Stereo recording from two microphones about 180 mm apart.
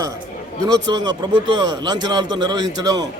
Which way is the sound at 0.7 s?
25° right (ahead or behind).